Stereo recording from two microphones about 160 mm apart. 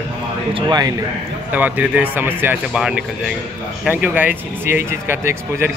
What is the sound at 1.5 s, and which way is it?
A man's voice, 10° right (ahead or behind).